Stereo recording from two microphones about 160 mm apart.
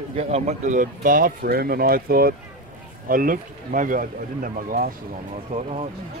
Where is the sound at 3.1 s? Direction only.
60° right (ahead or behind).